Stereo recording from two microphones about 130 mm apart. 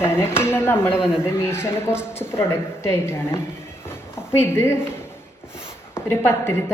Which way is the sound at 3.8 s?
20° left (ahead or behind).